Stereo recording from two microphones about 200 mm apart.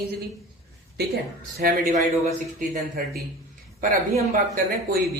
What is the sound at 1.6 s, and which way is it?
Speech, 50° right (ahead or behind).